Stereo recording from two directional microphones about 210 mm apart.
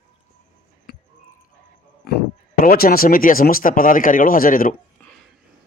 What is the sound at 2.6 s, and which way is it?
Speech, 45° left (ahead or behind).